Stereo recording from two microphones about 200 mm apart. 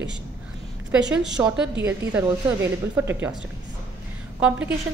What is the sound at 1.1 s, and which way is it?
Speech, 5° right (ahead or behind).